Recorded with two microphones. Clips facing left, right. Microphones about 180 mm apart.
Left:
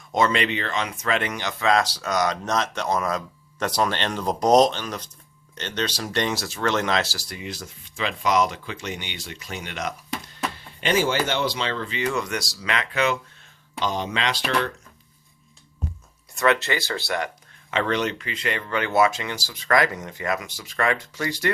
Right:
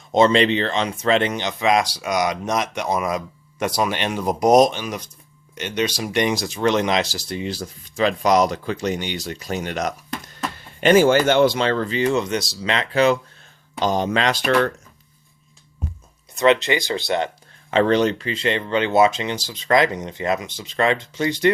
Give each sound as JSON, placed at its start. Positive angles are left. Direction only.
{"t": 0.1, "sound": "speech", "side_deg": -30}
{"t": 10.8, "sound": "speech", "side_deg": -50}
{"t": 16.3, "sound": "speech", "side_deg": -20}